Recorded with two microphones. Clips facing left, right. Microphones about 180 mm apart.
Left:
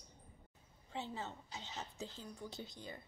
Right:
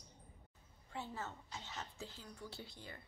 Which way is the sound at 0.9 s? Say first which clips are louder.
Left 2 dB; 20° left (ahead or behind).